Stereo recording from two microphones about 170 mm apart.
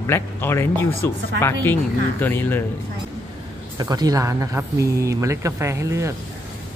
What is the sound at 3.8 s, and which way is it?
Speech, 20° right (ahead or behind).